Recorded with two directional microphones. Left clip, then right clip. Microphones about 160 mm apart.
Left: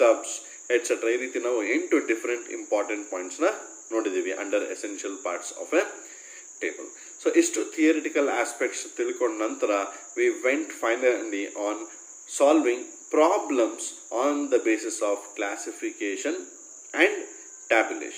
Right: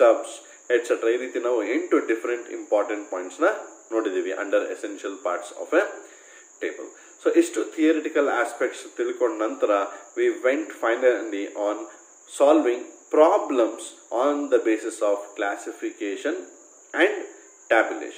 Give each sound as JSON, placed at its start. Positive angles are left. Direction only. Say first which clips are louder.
{"t": 0.0, "sound": "a man's voice", "louder": "right 3 dB", "side_deg": 20}
{"t": 16.9, "sound": "cricket", "louder": "right 1 dB", "side_deg": 15}
{"t": 17.6, "sound": "a man's voice", "louder": "right 2 dB", "side_deg": 20}